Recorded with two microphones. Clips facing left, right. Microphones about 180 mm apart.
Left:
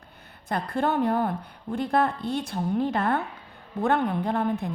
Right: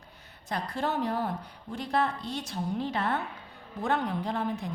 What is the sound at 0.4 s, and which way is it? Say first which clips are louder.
A woman's voice: left 5 dB; 55° left (ahead or behind).